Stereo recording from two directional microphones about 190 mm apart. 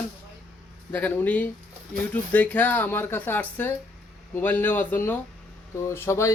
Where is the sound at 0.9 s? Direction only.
10° left (ahead or behind).